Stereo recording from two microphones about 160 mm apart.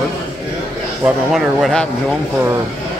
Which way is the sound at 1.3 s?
Centre (ahead or behind).